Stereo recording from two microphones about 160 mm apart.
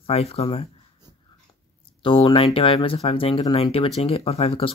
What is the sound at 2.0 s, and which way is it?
Speech, 30° left (ahead or behind).